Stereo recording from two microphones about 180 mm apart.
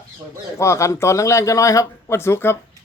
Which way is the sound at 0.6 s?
15° left (ahead or behind).